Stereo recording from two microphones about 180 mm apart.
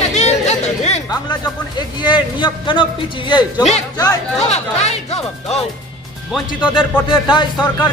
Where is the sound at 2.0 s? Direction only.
25° left (ahead or behind).